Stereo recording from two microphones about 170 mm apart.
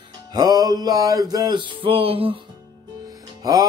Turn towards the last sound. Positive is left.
turn(degrees=-20)  # may be behind; listen again after turning